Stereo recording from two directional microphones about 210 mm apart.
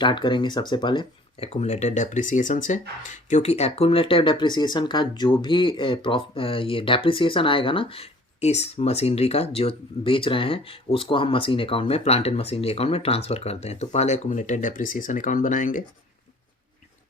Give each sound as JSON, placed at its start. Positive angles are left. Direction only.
{"t": 0.0, "sound": "speech", "side_deg": 20}